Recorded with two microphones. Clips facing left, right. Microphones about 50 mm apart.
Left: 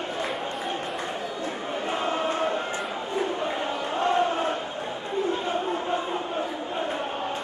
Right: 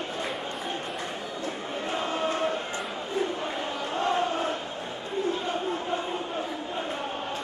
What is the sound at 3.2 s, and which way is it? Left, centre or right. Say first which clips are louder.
Crowd: left 2 dB; centre.